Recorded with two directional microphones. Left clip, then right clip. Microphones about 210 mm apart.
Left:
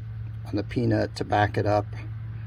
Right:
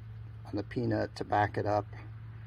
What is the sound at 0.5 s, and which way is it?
Speech, 5° left (ahead or behind).